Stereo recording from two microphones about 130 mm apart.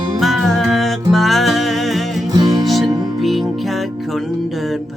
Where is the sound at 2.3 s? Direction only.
30° right (ahead or behind).